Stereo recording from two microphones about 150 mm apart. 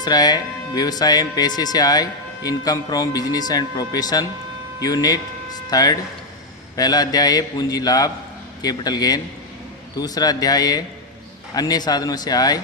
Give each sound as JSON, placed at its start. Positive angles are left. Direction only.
{"t": 0.0, "sound": "speech", "side_deg": 25}